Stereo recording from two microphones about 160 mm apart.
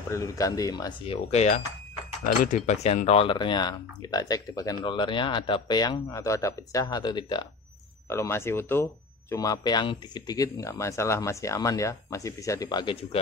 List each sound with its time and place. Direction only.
0.1 s speech: 20° left (ahead or behind)
8.1 s speech: 15° left (ahead or behind); by 13.2 s 35° left (ahead or behind)